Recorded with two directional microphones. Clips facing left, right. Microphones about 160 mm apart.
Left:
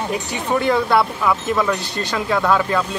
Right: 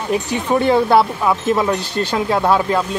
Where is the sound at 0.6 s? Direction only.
25° right (ahead or behind).